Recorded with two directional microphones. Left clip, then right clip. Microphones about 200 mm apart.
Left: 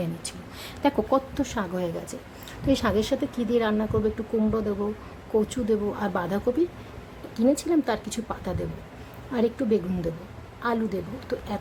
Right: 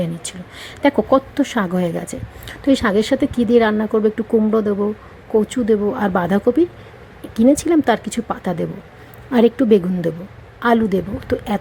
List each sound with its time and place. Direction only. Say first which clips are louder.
0.0 s a woman's voice: right 8 dB; 15° right (ahead or behind)